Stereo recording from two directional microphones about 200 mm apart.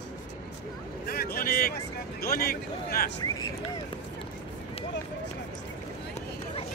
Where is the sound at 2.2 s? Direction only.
50° left (ahead or behind).